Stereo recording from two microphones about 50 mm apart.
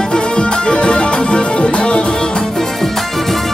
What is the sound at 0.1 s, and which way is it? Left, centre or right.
Music, centre.